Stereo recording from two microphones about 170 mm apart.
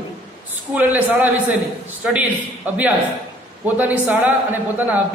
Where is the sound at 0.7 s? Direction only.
10° right (ahead or behind).